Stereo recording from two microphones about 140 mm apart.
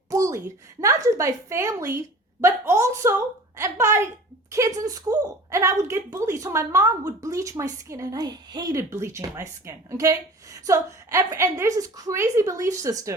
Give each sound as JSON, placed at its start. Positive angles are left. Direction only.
{"t": 0.1, "sound": "speech", "side_deg": -20}